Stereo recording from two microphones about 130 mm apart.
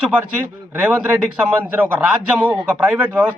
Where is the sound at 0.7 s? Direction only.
10° right (ahead or behind).